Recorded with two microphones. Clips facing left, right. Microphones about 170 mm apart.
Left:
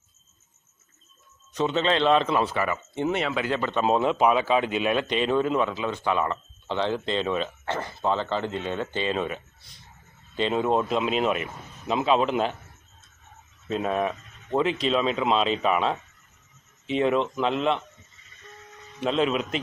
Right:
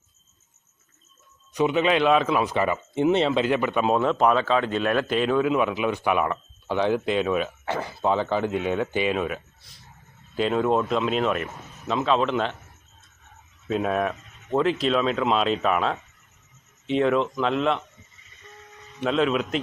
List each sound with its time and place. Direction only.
1.5 s speech: 15° right (ahead or behind)
2.4 s speech: 20° right (ahead or behind)
3.8 s speech: centre (ahead or behind)
5.6 s speech: 15° right (ahead or behind); by 12.5 s 5° left (ahead or behind)
13.7 s speech: 5° right (ahead or behind)
18.9 s speech: centre (ahead or behind)